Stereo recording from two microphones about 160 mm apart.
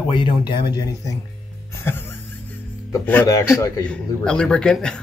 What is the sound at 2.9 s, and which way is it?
Speech, 15° left (ahead or behind).